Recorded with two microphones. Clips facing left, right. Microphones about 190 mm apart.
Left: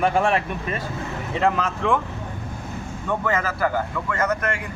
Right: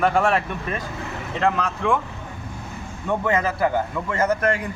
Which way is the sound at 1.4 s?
5° left (ahead or behind).